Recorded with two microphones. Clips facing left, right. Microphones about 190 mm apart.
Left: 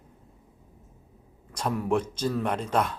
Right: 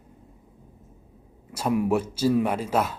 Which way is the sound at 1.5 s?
10° right (ahead or behind).